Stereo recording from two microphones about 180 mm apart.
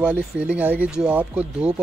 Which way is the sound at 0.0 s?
5° right (ahead or behind).